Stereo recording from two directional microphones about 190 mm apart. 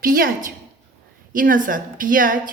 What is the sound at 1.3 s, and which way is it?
Speech, 45° right (ahead or behind).